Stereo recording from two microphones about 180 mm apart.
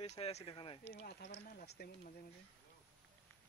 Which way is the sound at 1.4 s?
55° left (ahead or behind).